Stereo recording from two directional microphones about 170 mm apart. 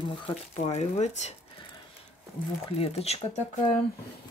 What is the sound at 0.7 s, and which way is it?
Speech, 40° left (ahead or behind).